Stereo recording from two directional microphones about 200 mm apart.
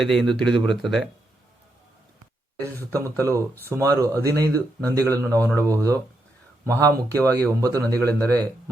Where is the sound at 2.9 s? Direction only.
15° right (ahead or behind).